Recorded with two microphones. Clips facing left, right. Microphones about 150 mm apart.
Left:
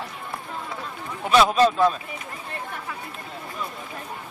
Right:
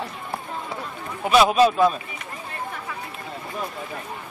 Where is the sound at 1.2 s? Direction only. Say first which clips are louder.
Right 1 dB; 10° right (ahead or behind).